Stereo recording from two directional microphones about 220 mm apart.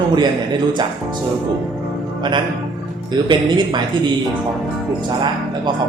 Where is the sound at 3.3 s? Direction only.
20° right (ahead or behind).